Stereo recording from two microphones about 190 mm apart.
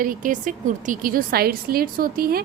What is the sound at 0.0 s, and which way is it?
A woman's voice, 45° right (ahead or behind).